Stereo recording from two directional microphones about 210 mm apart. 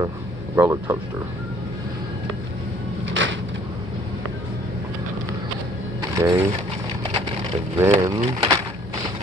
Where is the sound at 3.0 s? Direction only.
60° right (ahead or behind).